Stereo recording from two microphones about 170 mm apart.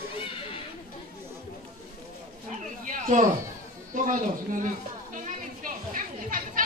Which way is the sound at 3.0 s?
50° right (ahead or behind).